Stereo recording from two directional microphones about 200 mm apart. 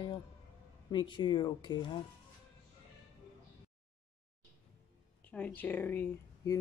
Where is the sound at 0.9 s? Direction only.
25° left (ahead or behind).